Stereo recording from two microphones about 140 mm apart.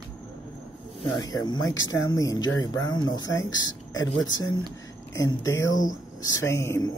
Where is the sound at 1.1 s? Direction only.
30° left (ahead or behind).